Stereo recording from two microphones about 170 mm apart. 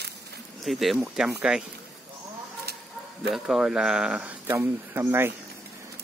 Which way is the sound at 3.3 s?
5° right (ahead or behind).